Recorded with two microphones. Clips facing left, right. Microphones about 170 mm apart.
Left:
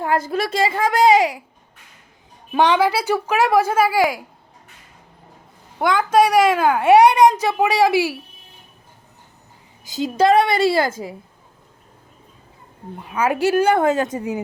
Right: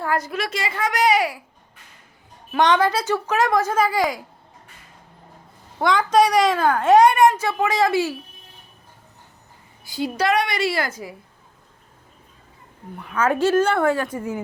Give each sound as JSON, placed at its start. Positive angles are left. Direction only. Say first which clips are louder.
{"t": 0.0, "sound": "a woman's voice", "louder": "left 4 dB", "side_deg": 20}
{"t": 2.5, "sound": "a woman's voice", "louder": "left 2 dB", "side_deg": 10}
{"t": 5.8, "sound": "a woman's voice", "louder": "left 1 dB", "side_deg": 5}
{"t": 9.8, "sound": "a woman's voice", "louder": "left 5 dB", "side_deg": 20}
{"t": 13.0, "sound": "a woman's voice", "louder": "even", "side_deg": 15}